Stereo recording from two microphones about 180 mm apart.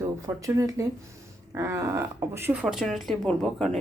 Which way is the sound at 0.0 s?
15° right (ahead or behind).